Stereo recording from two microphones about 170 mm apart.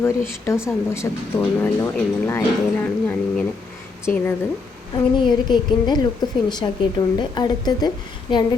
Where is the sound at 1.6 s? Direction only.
10° left (ahead or behind).